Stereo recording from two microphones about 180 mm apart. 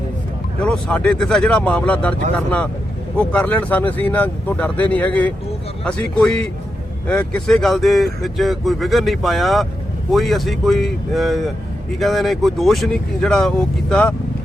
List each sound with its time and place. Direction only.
0.6 s speech: 5° left (ahead or behind)
3.2 s speech: 10° left (ahead or behind)